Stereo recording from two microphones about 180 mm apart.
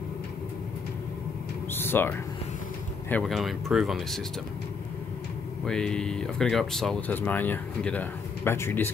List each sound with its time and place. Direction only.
1.7 s a sound: 10° left (ahead or behind)
3.1 s speech: 5° left (ahead or behind)
5.7 s speech: 5° left (ahead or behind)